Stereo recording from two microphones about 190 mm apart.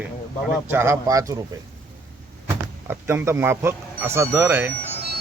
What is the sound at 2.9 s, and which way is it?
Speech, 10° right (ahead or behind).